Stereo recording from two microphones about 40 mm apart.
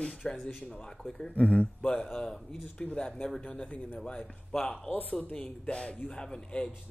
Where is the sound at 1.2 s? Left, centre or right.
Left.